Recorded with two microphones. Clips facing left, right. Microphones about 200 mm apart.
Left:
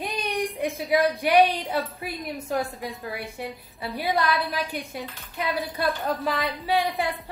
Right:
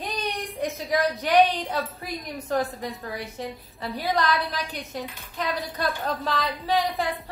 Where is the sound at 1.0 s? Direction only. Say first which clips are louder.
Even; 10° left (ahead or behind).